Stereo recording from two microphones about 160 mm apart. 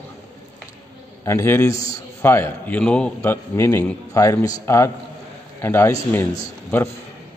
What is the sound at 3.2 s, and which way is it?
A man's voice, 15° left (ahead or behind).